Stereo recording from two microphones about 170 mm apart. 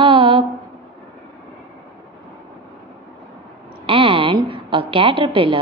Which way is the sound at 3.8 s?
30° right (ahead or behind).